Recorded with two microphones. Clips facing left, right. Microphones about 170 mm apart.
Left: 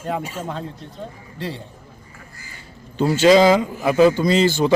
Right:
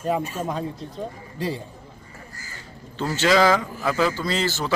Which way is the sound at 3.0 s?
15° left (ahead or behind).